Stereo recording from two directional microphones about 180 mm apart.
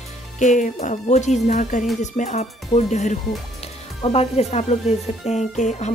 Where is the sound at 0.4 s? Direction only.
45° left (ahead or behind).